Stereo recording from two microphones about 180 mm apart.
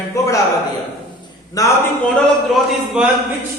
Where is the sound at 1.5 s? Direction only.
20° left (ahead or behind).